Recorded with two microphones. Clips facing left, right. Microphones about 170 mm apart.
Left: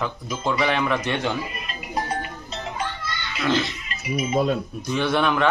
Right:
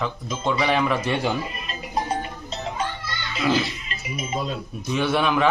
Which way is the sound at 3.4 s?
10° right (ahead or behind).